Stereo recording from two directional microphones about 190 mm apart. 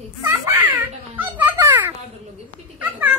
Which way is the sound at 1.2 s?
10° right (ahead or behind).